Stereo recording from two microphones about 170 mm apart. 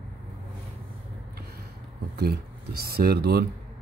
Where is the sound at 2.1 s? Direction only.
65° right (ahead or behind).